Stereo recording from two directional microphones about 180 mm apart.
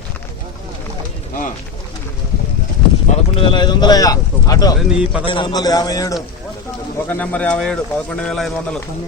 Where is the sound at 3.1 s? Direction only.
30° left (ahead or behind).